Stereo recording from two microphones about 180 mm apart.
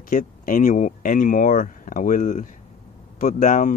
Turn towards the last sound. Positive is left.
turn(degrees=45)  # may be behind; listen again after turning